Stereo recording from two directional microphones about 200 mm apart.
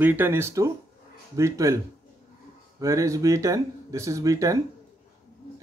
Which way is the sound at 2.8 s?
15° right (ahead or behind).